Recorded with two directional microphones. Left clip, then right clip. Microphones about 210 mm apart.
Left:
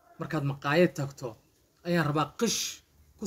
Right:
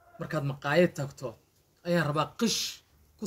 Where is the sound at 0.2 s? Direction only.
5° right (ahead or behind).